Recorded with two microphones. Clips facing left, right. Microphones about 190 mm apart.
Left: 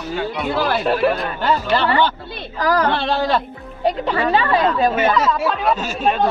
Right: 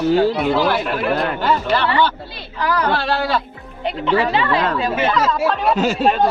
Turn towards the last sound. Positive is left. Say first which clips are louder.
# left 3 dB
turn(degrees=40)  # may be behind; listen again after turning